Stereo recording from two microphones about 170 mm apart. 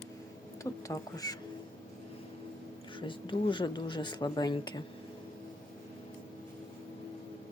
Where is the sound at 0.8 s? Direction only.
20° left (ahead or behind).